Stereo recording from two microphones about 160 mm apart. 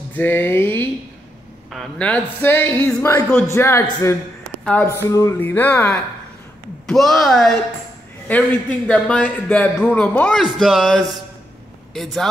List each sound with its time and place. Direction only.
0.1 s a man's voice: 10° left (ahead or behind)
5.1 s music: 20° left (ahead or behind)
5.5 s a man's voice: 10° left (ahead or behind)